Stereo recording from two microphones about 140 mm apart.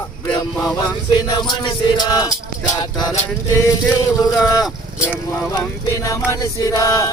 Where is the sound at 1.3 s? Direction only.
30° left (ahead or behind).